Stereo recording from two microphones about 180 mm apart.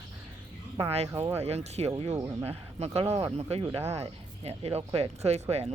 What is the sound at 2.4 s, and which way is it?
Speech, 35° right (ahead or behind).